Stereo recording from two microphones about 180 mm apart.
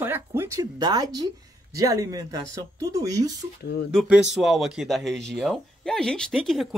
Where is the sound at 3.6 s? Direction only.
60° left (ahead or behind).